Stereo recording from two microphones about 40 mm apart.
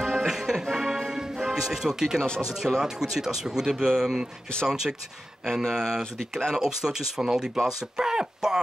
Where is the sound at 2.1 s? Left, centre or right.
Left.